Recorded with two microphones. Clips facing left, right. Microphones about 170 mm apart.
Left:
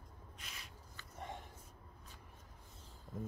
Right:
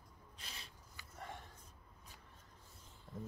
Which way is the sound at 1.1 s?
20° left (ahead or behind).